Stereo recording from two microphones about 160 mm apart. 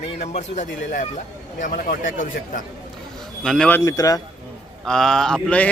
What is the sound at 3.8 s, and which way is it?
Speech, 20° left (ahead or behind).